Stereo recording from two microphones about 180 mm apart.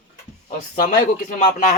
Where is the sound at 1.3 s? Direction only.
45° left (ahead or behind).